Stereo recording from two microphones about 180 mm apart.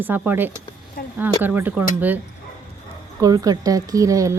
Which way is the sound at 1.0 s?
55° left (ahead or behind).